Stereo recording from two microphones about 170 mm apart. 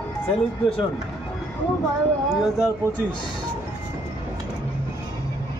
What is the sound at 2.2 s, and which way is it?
Speech, 5° right (ahead or behind).